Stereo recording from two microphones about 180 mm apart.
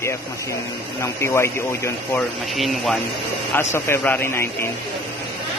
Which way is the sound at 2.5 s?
Centre (ahead or behind).